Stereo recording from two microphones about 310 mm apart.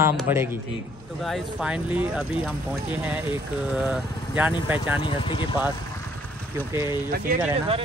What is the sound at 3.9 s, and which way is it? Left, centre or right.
Speech, centre.